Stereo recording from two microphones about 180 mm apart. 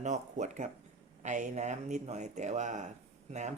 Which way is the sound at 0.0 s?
40° right (ahead or behind).